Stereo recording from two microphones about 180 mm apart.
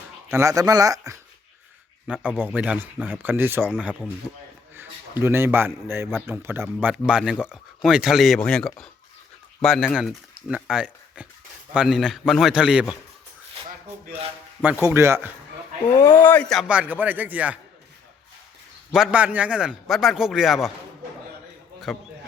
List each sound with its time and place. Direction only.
0.3 s a man's voice: 15° right (ahead or behind)
2.1 s a man's voice: 10° right (ahead or behind)
3.6 s a man's voice: centre (ahead or behind)
4.7 s a man's voice: 10° right (ahead or behind)
14.6 s a man's voice: 15° right (ahead or behind)
16.0 s a man's voice: 10° left (ahead or behind); by 17.6 s 10° right (ahead or behind)
18.9 s a man's voice: 5° right (ahead or behind)
21.9 s a man's voice: centre (ahead or behind)